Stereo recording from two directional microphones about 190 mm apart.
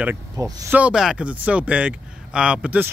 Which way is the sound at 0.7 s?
5° right (ahead or behind).